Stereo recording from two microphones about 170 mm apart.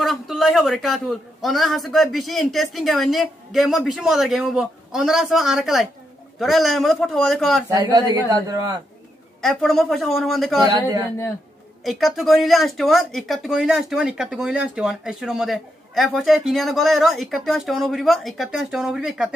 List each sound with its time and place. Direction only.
0.0 s speech: centre (ahead or behind)
7.7 s a man's voice: 20° right (ahead or behind)
9.4 s speech: centre (ahead or behind)
11.8 s speech: centre (ahead or behind)